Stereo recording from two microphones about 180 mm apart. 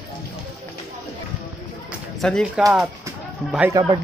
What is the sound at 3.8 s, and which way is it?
Speech, 20° right (ahead or behind).